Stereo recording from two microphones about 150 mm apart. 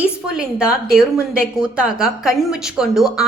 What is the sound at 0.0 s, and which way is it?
A woman's voice, 5° right (ahead or behind).